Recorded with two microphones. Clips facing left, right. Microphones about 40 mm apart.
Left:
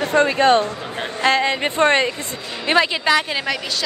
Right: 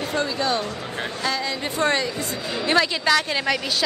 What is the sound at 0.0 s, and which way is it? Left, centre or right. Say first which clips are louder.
Speech: left 8 dB; left.